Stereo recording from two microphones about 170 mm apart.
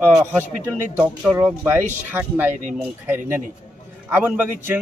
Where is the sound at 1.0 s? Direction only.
10° right (ahead or behind).